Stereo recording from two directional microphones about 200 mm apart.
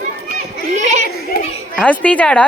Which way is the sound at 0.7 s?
35° right (ahead or behind).